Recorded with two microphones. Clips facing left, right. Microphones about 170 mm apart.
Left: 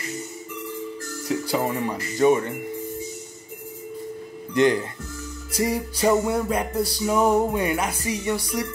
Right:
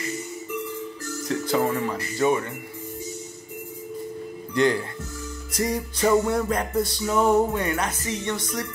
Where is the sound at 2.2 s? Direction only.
25° left (ahead or behind).